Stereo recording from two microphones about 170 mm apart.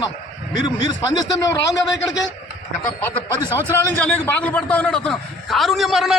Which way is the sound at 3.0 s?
10° left (ahead or behind).